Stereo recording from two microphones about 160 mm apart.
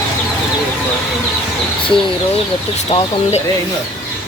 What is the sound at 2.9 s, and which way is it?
Speech, 35° left (ahead or behind).